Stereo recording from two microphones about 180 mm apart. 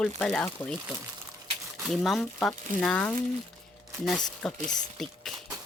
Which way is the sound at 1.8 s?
Centre (ahead or behind).